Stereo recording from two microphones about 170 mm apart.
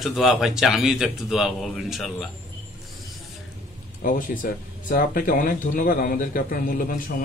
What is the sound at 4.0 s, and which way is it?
Speech, 55° left (ahead or behind).